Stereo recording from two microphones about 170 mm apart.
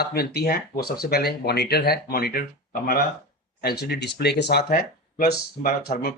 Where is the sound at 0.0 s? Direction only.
70° left (ahead or behind).